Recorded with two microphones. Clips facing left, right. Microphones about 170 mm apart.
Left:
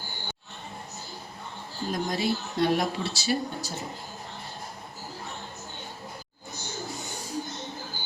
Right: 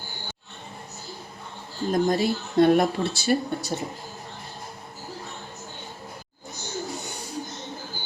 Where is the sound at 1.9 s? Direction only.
50° right (ahead or behind).